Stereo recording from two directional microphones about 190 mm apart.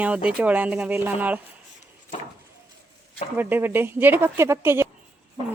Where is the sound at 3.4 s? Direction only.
10° right (ahead or behind).